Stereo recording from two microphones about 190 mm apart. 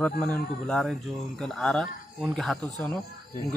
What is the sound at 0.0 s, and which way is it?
Speech, 5° left (ahead or behind).